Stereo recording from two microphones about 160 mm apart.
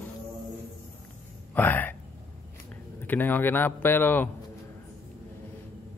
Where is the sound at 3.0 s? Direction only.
10° left (ahead or behind).